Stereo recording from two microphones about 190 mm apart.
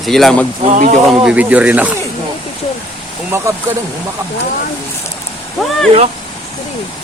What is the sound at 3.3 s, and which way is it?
Speech, 15° right (ahead or behind).